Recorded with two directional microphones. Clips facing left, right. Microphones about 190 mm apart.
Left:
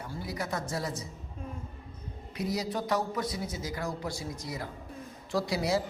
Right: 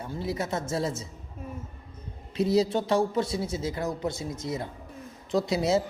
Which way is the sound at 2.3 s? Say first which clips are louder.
Right 9 dB; 25° right (ahead or behind).